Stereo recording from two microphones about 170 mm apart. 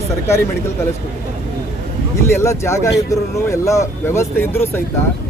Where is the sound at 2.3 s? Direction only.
15° left (ahead or behind).